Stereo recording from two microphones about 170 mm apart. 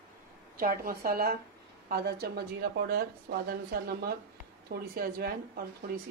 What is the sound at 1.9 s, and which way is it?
Speech, 70° right (ahead or behind).